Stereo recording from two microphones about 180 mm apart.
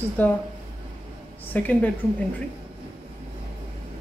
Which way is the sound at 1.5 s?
10° left (ahead or behind).